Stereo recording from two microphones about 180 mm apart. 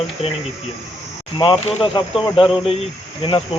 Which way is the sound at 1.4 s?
25° left (ahead or behind).